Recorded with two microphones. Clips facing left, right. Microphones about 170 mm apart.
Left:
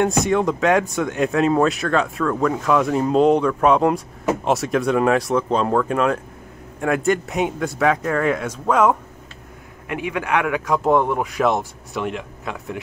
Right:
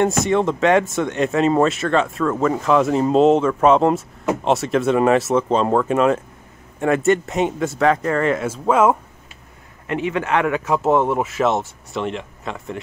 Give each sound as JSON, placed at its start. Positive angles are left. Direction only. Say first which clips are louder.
{"t": 0.2, "sound": "speech", "louder": "right 1 dB", "side_deg": 0}
{"t": 9.8, "sound": "a man's voice", "louder": "right 3 dB", "side_deg": 10}
{"t": 10.6, "sound": "speech", "louder": "even", "side_deg": -5}